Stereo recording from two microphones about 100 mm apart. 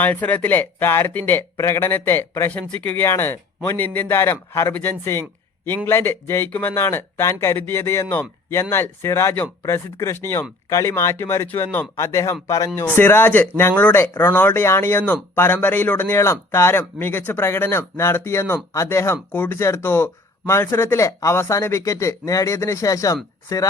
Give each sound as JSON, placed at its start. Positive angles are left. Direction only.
{"t": 0.0, "sound": "a man's voice", "side_deg": 15}
{"t": 2.5, "sound": "a man's voice", "side_deg": 15}